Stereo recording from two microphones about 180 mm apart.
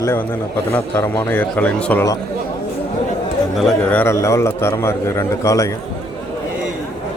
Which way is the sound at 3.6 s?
10° left (ahead or behind).